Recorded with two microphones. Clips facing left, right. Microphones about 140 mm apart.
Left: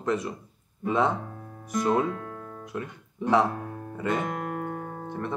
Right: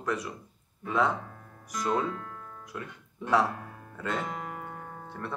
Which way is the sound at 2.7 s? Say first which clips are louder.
Left 6 dB; 20° left (ahead or behind).